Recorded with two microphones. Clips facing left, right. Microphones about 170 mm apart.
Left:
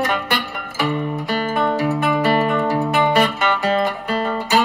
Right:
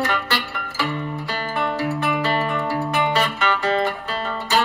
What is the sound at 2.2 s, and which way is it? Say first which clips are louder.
Music: left 5 dB; 15° left (ahead or behind).